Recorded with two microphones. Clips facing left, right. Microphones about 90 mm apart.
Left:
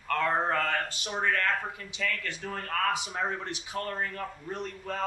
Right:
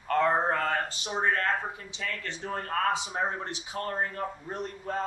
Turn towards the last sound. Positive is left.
turn(degrees=-20)  # may be behind; listen again after turning